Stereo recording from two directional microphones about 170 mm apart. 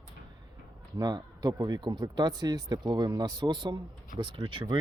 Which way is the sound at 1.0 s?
25° right (ahead or behind).